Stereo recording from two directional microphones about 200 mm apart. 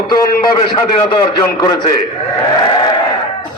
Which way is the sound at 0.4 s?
20° left (ahead or behind).